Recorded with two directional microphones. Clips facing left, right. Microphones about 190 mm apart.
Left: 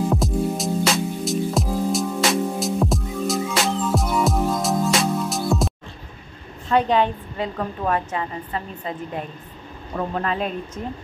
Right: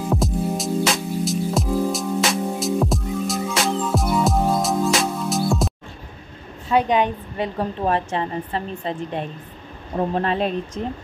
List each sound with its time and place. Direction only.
0.1 s music: centre (ahead or behind)
6.7 s a woman's voice: 15° right (ahead or behind)
7.5 s a woman's voice: 30° right (ahead or behind)